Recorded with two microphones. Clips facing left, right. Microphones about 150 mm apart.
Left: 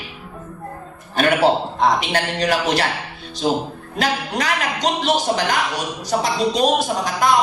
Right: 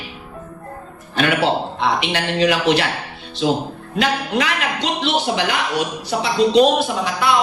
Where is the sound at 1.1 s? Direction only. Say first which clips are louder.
Left 2 dB; 40° left (ahead or behind).